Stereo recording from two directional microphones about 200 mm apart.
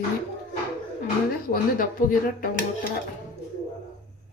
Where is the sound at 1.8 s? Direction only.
45° left (ahead or behind).